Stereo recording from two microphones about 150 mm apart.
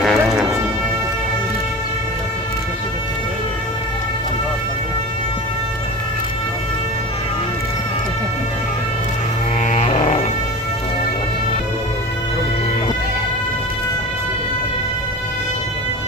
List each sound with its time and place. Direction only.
0.0 s music: centre (ahead or behind)
9.6 s music: 45° left (ahead or behind)